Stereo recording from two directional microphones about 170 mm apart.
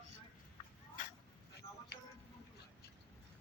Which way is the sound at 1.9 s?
80° left.